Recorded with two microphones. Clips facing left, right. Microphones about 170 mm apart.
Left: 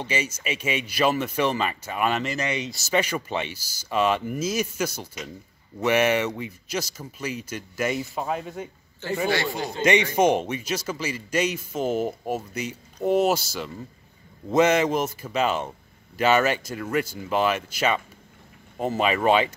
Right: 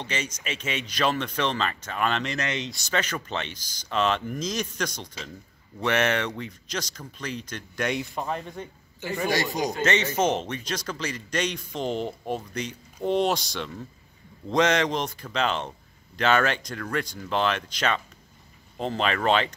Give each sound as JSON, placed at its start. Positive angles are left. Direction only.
{"t": 0.0, "sound": "speech", "side_deg": 10}
{"t": 9.3, "sound": "a man's voice", "side_deg": -40}
{"t": 9.8, "sound": "speech", "side_deg": 15}